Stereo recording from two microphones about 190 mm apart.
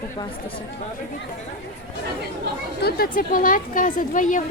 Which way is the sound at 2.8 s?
55° left (ahead or behind).